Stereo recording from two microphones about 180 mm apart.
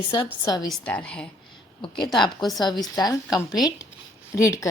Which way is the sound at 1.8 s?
25° left (ahead or behind).